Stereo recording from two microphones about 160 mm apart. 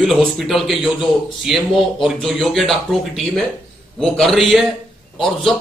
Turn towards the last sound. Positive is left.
turn(degrees=0)  # may be behind; listen again after turning